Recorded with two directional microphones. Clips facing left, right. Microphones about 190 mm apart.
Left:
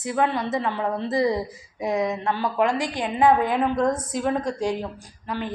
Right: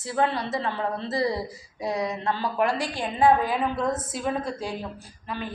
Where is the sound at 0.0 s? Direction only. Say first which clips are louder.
Left 2 dB; 20° left (ahead or behind).